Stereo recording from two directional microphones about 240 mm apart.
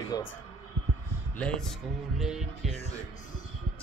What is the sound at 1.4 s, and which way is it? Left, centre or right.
Music, centre.